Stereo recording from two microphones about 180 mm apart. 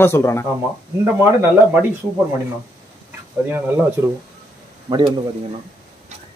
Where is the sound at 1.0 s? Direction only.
15° right (ahead or behind).